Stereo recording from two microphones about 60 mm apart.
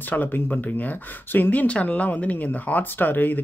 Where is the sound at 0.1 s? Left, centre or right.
Left.